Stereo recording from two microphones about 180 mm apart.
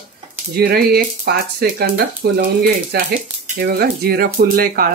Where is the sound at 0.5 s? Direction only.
60° right (ahead or behind).